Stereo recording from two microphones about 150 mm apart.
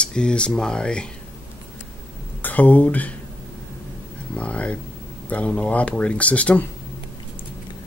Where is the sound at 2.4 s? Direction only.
10° left (ahead or behind).